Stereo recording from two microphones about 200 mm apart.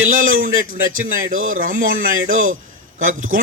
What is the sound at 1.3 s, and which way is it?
Speech, 90° right.